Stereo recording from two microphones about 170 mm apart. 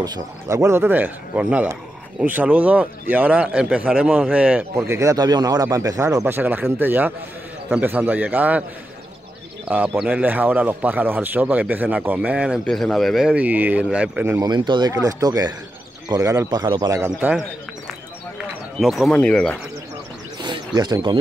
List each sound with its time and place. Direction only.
0.0 s speech: 20° right (ahead or behind)
9.8 s speech: 5° right (ahead or behind)
14.5 s a man's voice: 25° right (ahead or behind)
17.2 s speech: 5° right (ahead or behind)
18.8 s speech: centre (ahead or behind)
20.4 s a sound: 25° right (ahead or behind)